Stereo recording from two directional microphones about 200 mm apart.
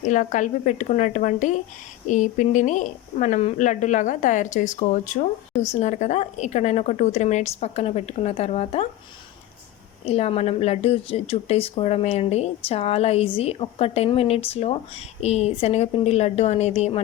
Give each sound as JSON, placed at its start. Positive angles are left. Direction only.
{"t": 0.0, "sound": "speech", "side_deg": 40}
{"t": 10.1, "sound": "speech", "side_deg": 30}